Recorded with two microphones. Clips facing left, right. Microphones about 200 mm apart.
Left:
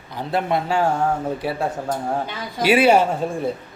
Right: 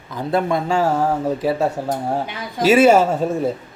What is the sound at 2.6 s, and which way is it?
Speech, 45° right (ahead or behind).